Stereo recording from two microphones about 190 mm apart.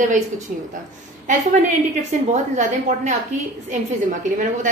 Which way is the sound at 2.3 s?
40° right (ahead or behind).